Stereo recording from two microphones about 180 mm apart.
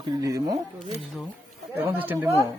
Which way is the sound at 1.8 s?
10° right (ahead or behind).